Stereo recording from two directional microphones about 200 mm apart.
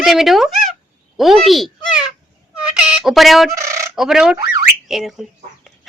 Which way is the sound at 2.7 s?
5° right (ahead or behind).